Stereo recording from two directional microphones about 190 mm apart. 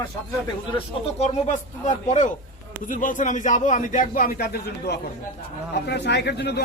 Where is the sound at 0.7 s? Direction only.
35° left (ahead or behind).